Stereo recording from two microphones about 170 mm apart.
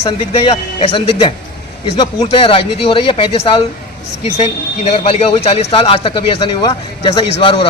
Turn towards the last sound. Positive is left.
turn(degrees=30)  # may be behind; listen again after turning